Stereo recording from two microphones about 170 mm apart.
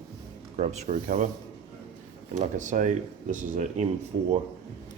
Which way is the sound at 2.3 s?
45° right (ahead or behind).